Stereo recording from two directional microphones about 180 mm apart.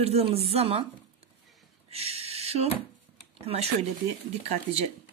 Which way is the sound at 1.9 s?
35° right (ahead or behind).